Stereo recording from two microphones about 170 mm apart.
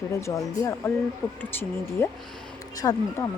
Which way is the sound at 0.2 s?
15° left (ahead or behind).